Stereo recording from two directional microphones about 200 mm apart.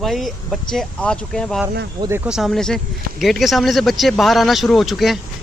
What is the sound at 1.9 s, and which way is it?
Speech, 15° right (ahead or behind).